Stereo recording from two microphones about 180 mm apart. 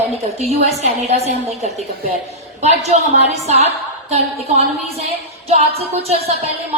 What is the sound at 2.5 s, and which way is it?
A woman's voice, 40° right (ahead or behind).